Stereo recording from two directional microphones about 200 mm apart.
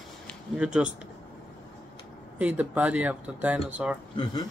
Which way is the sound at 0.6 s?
5° right (ahead or behind).